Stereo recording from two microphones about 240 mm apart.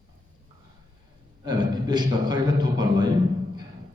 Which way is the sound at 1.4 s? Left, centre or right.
Centre.